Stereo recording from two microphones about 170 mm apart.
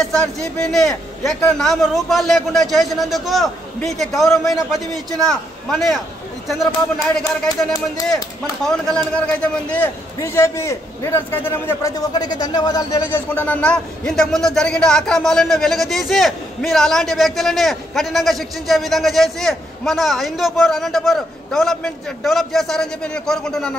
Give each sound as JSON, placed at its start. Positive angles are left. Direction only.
{"t": 0.0, "sound": "a man's voice", "side_deg": 5}
{"t": 7.4, "sound": "speech", "side_deg": 20}
{"t": 8.6, "sound": "a man's voice", "side_deg": 5}